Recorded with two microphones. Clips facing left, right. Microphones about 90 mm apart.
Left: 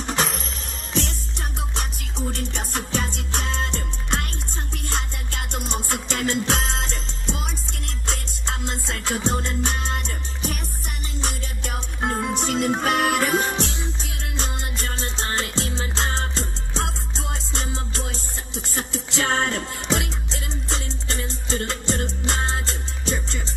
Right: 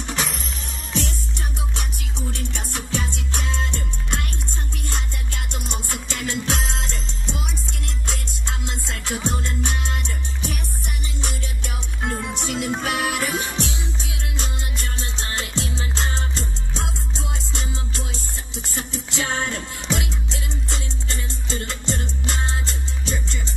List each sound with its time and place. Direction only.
0.0 s music: 40° left (ahead or behind)
1.8 s music: 45° left (ahead or behind)
6.5 s music: centre (ahead or behind)
8.5 s music: 40° left (ahead or behind)
18.8 s music: 45° left (ahead or behind)
21.5 s music: 40° left (ahead or behind)